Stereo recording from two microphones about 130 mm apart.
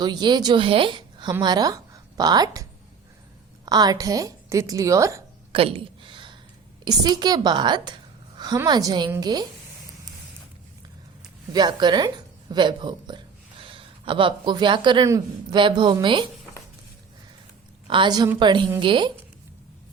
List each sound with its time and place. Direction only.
0.0 s a woman's voice: 35° right (ahead or behind)
3.7 s a woman's voice: 30° right (ahead or behind)
5.5 s a sound: 45° right (ahead or behind)
6.8 s a woman's voice: 30° right (ahead or behind)
11.5 s a woman's voice: 35° right (ahead or behind)
15.0 s a woman's voice: 25° right (ahead or behind)
15.5 s a woman's voice: 35° right (ahead or behind)
17.8 s a woman's voice: 40° right (ahead or behind)